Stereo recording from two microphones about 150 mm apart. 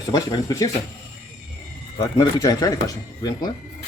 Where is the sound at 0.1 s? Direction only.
25° left (ahead or behind).